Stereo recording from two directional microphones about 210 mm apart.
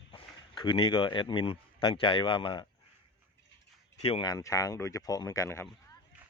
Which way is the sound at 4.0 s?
25° left (ahead or behind).